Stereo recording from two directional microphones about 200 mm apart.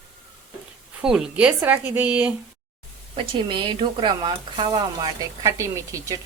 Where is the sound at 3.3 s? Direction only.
25° right (ahead or behind).